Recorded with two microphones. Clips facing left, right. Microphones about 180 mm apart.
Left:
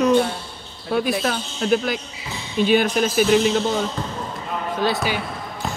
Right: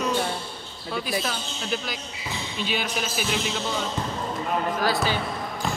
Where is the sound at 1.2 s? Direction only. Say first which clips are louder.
Left 8 dB; 55° left (ahead or behind).